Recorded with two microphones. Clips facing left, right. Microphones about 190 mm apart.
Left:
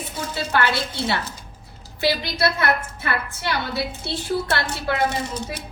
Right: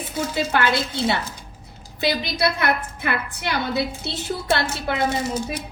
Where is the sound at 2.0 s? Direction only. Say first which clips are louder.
Even; 20° right (ahead or behind).